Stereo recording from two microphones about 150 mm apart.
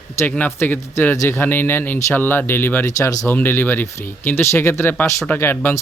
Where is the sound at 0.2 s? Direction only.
10° left (ahead or behind).